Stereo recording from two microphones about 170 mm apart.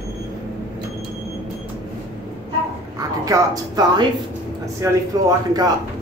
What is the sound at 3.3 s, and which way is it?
A man's voice, 20° right (ahead or behind).